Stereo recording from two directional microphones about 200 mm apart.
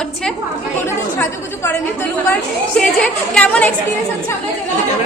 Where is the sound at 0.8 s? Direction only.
10° left (ahead or behind).